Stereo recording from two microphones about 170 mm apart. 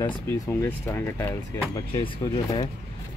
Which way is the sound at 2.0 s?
35° left (ahead or behind).